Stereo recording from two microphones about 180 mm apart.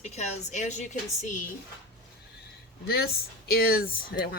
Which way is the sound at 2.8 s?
60° left (ahead or behind).